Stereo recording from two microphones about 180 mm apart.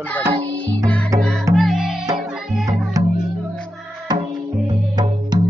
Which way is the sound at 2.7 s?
20° right (ahead or behind).